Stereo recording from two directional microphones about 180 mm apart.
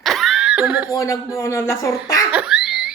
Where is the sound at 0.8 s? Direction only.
20° left (ahead or behind).